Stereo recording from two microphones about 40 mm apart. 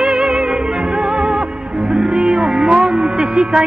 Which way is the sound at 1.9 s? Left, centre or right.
Centre.